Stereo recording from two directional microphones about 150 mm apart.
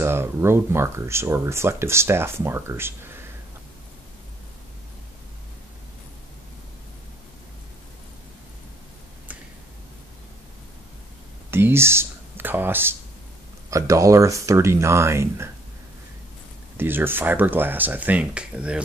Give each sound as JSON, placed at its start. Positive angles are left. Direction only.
{"t": 0.0, "sound": "speech", "side_deg": -15}
{"t": 11.5, "sound": "speech", "side_deg": -15}
{"t": 16.7, "sound": "speech", "side_deg": -15}